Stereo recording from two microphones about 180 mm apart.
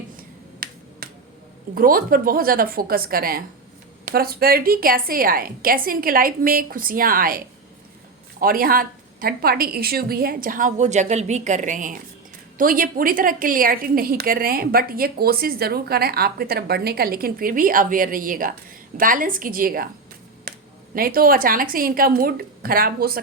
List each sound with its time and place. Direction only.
0.6 s finger snapping: 55° right (ahead or behind)
1.7 s a woman's voice: 50° right (ahead or behind)
20.5 s a sound: 60° right (ahead or behind)
20.9 s a woman's voice: 55° right (ahead or behind)